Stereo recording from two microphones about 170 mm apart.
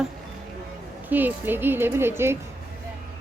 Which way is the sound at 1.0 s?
10° right (ahead or behind).